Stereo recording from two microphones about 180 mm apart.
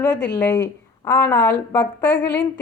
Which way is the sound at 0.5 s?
15° left (ahead or behind).